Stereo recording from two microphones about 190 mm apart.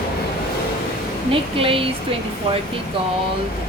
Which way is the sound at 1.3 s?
30° right (ahead or behind).